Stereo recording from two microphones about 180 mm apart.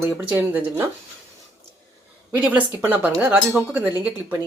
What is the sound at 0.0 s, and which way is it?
Speech, 10° right (ahead or behind).